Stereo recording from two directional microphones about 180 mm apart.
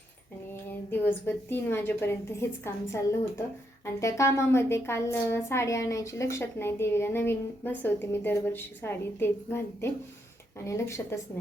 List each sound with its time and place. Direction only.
0.9 s a woman's voice: 10° left (ahead or behind)